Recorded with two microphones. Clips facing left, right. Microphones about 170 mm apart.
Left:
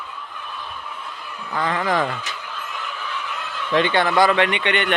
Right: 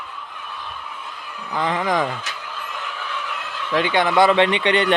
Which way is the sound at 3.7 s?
10° right (ahead or behind).